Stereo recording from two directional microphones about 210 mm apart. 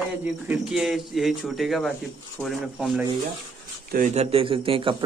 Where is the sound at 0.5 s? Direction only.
5° right (ahead or behind).